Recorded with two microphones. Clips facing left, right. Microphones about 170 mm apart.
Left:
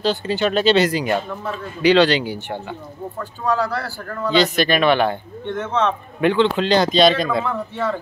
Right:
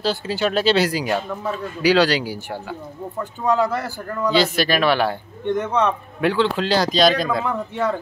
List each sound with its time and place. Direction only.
0.0 s speech: 5° right (ahead or behind)
3.4 s a man's voice: 20° right (ahead or behind)
4.3 s speech: 5° right (ahead or behind)
5.5 s speech: 15° right (ahead or behind)
6.2 s speech: centre (ahead or behind)
7.4 s speech: 15° right (ahead or behind)